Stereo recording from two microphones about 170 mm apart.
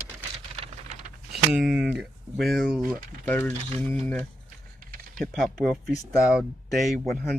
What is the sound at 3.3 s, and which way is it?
Speech, 10° left (ahead or behind).